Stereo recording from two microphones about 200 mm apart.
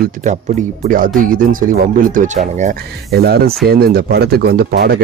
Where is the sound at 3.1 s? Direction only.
50° right (ahead or behind).